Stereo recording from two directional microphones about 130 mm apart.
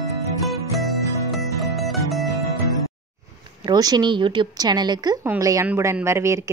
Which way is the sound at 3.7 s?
30° right (ahead or behind).